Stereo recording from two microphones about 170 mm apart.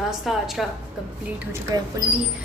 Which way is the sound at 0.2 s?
Centre (ahead or behind).